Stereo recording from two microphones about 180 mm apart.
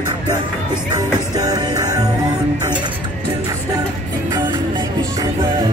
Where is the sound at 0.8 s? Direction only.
20° right (ahead or behind).